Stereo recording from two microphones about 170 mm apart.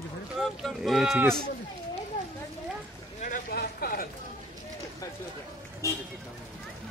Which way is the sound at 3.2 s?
55° left (ahead or behind).